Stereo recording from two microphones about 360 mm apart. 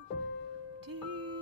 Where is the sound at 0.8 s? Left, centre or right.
Right.